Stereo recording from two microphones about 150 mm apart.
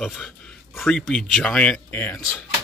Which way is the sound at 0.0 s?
Centre (ahead or behind).